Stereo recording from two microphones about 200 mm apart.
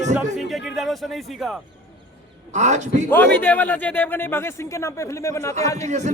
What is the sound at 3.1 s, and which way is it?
A man's voice, 10° left (ahead or behind).